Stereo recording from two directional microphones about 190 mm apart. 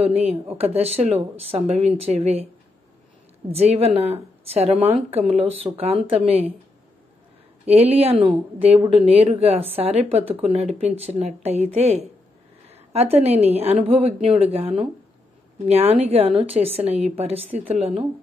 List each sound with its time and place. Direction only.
0.0 s speech: 35° right (ahead or behind)
3.5 s speech: 35° right (ahead or behind)
7.6 s speech: 35° right (ahead or behind)